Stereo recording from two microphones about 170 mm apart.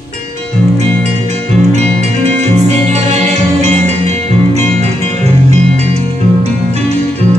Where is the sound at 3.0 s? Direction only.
40° right (ahead or behind).